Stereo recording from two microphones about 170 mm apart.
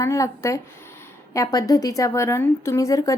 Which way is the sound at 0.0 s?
15° left (ahead or behind).